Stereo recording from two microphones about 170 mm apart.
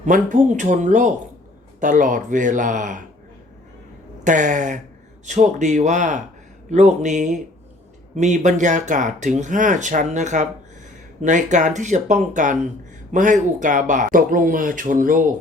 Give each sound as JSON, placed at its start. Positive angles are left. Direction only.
{"t": 0.0, "sound": "speech", "side_deg": -50}
{"t": 4.2, "sound": "speech", "side_deg": -50}